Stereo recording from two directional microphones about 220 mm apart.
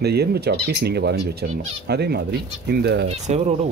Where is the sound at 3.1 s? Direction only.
30° right (ahead or behind).